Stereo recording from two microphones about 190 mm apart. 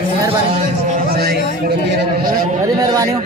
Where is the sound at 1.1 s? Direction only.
55° right (ahead or behind).